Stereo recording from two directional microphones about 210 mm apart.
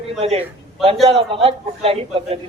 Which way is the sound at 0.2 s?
30° right (ahead or behind).